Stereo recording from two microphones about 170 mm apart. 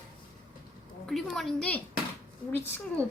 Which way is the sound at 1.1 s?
Centre (ahead or behind).